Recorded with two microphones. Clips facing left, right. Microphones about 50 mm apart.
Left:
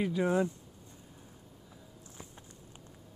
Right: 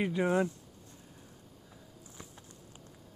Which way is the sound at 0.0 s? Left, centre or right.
Right.